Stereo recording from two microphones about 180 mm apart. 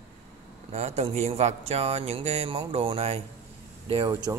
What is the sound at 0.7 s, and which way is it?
Speech, 35° right (ahead or behind).